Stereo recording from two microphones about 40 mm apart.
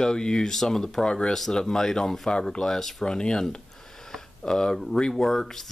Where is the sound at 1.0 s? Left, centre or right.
Left.